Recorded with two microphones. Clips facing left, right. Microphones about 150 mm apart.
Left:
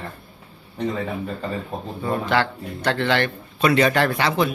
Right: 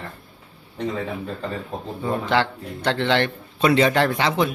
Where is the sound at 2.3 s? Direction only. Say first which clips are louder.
Even; 20° right (ahead or behind).